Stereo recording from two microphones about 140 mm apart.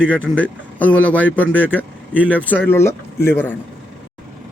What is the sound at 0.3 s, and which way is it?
Speech, 10° left (ahead or behind).